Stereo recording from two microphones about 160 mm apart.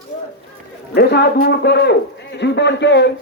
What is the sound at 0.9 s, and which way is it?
A man's voice, 85° left.